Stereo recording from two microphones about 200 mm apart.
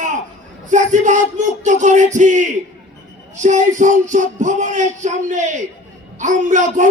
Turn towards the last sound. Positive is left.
turn(degrees=-40)  # may be behind; listen again after turning